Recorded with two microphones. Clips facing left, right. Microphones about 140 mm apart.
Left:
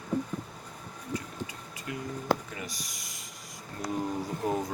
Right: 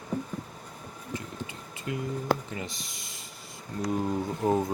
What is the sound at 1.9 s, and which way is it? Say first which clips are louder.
Speech: right 2 dB; 25° right (ahead or behind).